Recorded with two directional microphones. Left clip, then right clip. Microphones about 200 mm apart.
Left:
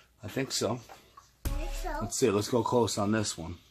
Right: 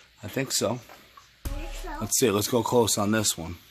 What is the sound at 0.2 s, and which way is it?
Speech, 60° right (ahead or behind).